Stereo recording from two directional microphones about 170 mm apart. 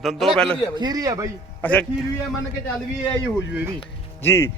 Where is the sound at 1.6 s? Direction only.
10° left (ahead or behind).